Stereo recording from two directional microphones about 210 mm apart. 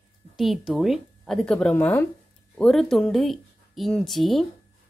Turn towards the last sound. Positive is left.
turn(degrees=0)  # may be behind; listen again after turning